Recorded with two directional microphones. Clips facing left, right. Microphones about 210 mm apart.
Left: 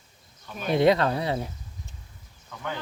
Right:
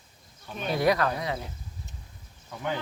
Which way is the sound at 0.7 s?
25° left (ahead or behind).